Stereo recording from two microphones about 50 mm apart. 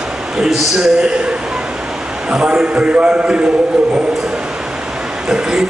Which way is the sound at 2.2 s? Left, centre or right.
Centre.